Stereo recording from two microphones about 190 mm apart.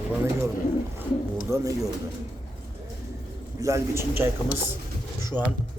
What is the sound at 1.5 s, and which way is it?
Speech, 15° right (ahead or behind).